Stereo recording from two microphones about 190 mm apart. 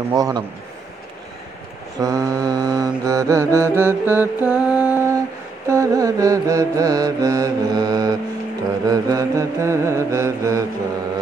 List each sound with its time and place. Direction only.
0.1 s a man's voice: 20° right (ahead or behind)
2.0 s mantra: 15° right (ahead or behind)